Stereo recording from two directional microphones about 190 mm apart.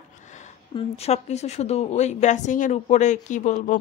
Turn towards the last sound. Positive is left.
turn(degrees=40)  # may be behind; listen again after turning